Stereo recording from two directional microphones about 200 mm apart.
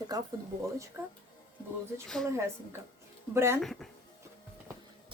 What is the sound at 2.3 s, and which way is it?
A woman's voice, 15° right (ahead or behind).